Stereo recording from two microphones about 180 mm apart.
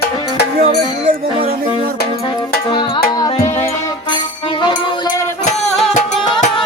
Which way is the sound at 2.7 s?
20° left (ahead or behind).